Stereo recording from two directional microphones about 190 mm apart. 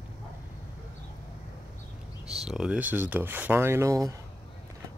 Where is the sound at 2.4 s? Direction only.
5° right (ahead or behind).